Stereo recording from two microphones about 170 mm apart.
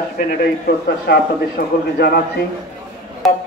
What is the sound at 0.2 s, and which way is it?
Speech, 60° left (ahead or behind).